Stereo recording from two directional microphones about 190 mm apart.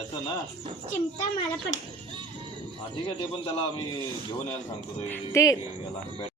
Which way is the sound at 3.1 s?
25° left (ahead or behind).